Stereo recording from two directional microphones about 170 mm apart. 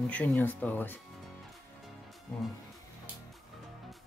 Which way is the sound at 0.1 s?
10° left (ahead or behind).